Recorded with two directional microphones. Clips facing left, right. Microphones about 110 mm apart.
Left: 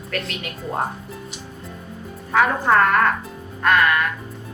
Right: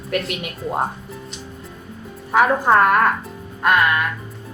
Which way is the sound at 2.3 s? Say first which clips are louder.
Right 2 dB; 20° right (ahead or behind).